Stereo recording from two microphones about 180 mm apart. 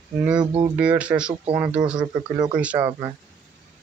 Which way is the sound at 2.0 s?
25° right (ahead or behind).